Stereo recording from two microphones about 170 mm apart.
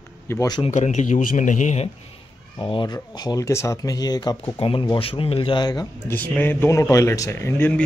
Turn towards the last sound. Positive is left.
turn(degrees=10)  # may be behind; listen again after turning